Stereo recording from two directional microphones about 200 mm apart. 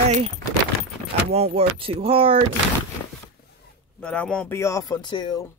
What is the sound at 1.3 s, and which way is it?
Speech, 30° right (ahead or behind).